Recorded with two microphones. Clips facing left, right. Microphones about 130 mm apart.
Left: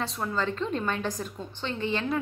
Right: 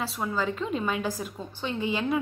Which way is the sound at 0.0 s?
5° right (ahead or behind).